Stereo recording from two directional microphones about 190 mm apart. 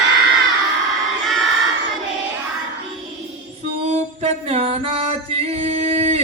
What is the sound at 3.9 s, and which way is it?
Singing, 35° right (ahead or behind).